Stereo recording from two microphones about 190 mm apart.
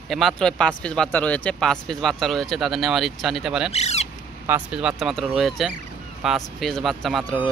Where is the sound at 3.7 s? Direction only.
35° left (ahead or behind).